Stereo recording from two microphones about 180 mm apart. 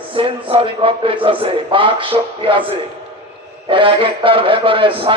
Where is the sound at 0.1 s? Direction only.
30° right (ahead or behind).